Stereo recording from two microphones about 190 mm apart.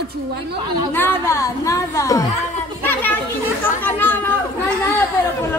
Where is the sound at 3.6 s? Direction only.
10° left (ahead or behind).